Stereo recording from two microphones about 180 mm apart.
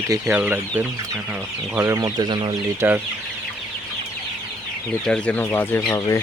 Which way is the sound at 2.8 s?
10° right (ahead or behind).